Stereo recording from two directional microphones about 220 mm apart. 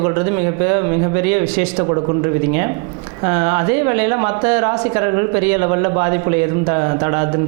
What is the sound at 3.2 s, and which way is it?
Speech, 20° right (ahead or behind).